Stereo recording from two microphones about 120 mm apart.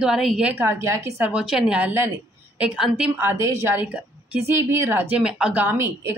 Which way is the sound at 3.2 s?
20° right (ahead or behind).